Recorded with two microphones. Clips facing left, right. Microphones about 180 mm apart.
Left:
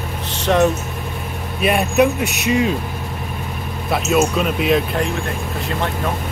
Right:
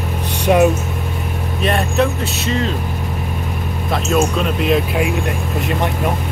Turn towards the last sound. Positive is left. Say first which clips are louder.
# right 3 dB
turn(degrees=-15)  # may be behind; listen again after turning